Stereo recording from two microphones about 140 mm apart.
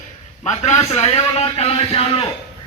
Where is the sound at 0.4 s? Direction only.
55° left (ahead or behind).